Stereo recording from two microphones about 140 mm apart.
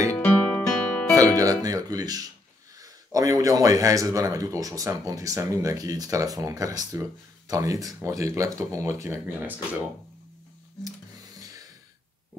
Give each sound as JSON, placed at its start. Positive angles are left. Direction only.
{"t": 0.1, "sound": "guitar", "side_deg": 15}
{"t": 1.3, "sound": "speech", "side_deg": -25}
{"t": 11.3, "sound": "a sound", "side_deg": -25}